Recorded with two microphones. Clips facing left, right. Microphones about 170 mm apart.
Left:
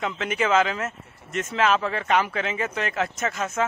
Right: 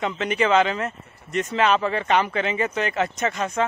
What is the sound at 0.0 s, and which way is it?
Speech, centre (ahead or behind).